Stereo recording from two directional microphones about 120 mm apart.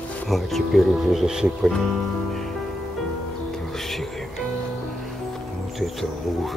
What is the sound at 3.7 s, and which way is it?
Music, centre (ahead or behind).